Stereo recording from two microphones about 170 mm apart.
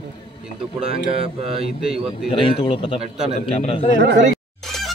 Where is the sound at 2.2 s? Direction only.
30° left (ahead or behind).